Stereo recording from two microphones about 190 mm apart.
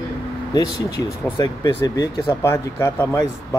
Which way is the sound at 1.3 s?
20° left (ahead or behind).